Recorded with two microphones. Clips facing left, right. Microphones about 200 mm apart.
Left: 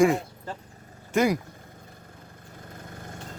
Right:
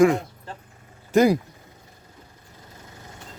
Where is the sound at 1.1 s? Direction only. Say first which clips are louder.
Right 5 dB; 35° right (ahead or behind).